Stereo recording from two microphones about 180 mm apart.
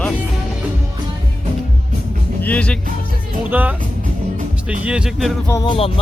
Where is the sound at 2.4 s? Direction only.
10° left (ahead or behind).